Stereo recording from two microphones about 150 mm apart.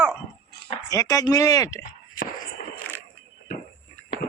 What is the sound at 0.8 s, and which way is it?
Speech, 25° left (ahead or behind).